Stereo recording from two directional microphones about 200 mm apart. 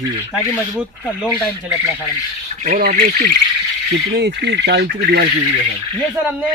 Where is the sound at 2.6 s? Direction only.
45° right (ahead or behind).